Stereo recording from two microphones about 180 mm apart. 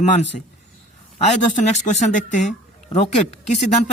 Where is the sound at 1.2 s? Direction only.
40° left (ahead or behind).